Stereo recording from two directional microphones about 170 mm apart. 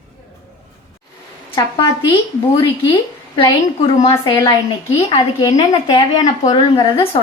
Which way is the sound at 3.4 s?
35° left (ahead or behind).